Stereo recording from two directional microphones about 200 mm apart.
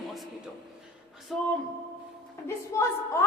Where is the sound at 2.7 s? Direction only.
15° left (ahead or behind).